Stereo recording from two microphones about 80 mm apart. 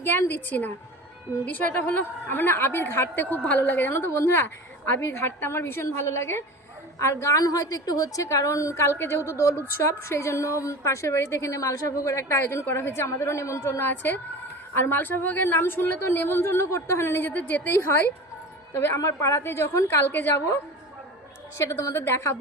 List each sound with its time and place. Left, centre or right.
0.0 s a woman's voice: left
18.9 s a woman's voice: left
21.9 s a woman's voice: left